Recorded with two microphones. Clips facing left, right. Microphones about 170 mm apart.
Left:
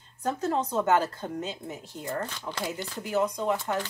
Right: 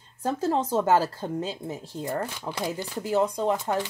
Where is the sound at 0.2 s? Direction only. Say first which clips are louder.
Right 2 dB; 30° right (ahead or behind).